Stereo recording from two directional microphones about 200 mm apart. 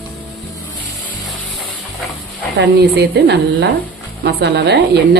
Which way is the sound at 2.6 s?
55° right (ahead or behind).